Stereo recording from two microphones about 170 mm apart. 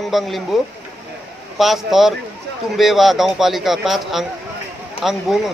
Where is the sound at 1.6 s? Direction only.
Centre (ahead or behind).